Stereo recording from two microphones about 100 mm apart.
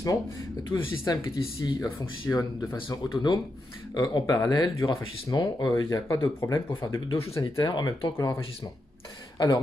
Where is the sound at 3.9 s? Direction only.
45° left (ahead or behind).